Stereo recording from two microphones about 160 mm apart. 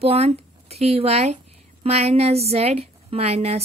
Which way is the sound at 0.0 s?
40° right (ahead or behind).